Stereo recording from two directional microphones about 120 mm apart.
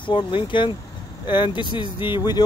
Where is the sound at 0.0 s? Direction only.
45° left (ahead or behind).